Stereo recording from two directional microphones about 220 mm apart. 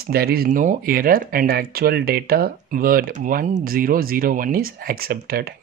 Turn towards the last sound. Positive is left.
turn(degrees=-45)  # may be behind; listen again after turning